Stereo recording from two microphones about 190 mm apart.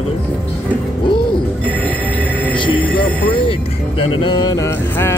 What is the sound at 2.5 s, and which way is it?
Music, 25° left (ahead or behind).